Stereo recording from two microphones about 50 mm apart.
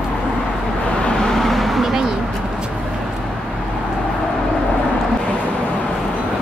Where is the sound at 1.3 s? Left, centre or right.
Centre.